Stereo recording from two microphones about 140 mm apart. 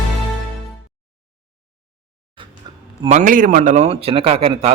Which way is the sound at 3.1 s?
70° right (ahead or behind).